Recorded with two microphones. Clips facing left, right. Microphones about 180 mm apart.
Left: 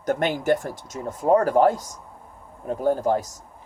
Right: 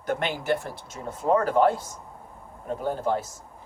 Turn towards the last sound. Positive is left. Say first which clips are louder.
# left 4 dB
turn(degrees=40)  # may be behind; listen again after turning